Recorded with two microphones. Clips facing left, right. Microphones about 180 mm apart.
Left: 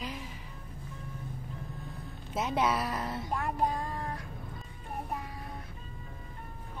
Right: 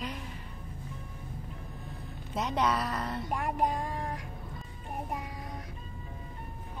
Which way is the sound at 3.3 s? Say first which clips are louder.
Right 1 dB; 15° right (ahead or behind).